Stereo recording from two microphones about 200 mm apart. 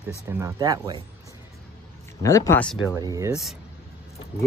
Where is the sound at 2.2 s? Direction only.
15° left (ahead or behind).